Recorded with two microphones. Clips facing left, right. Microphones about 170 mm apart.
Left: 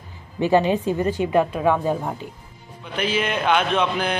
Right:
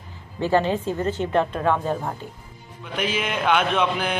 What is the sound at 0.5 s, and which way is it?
A woman's voice, 15° left (ahead or behind).